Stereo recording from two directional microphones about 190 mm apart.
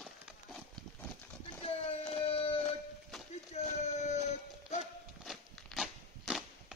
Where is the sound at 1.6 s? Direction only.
30° left (ahead or behind).